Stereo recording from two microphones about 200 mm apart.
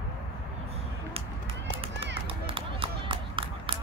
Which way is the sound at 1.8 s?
25° right (ahead or behind).